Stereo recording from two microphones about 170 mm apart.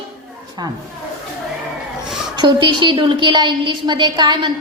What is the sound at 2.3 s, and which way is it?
A woman's voice, 25° right (ahead or behind).